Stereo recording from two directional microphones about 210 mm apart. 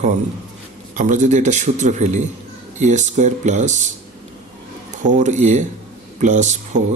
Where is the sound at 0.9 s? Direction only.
35° right (ahead or behind).